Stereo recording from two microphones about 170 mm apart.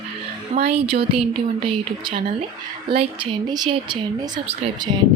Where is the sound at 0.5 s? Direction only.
45° right (ahead or behind).